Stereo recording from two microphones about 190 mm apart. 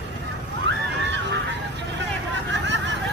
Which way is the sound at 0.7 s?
70° right (ahead or behind).